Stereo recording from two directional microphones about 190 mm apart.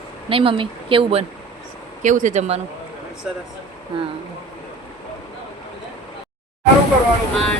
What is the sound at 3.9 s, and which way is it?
Speech, 30° right (ahead or behind).